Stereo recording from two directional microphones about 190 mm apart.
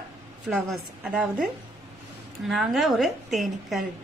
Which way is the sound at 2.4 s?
Centre (ahead or behind).